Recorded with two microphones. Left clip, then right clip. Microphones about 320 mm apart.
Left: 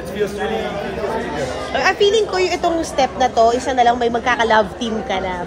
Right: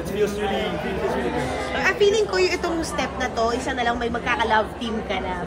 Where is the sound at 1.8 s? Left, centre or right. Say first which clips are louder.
Left 5 dB; left.